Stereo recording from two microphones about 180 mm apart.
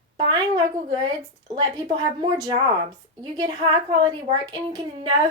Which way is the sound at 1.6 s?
20° right (ahead or behind).